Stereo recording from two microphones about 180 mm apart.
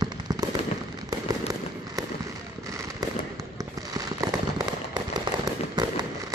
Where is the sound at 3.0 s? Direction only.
20° right (ahead or behind).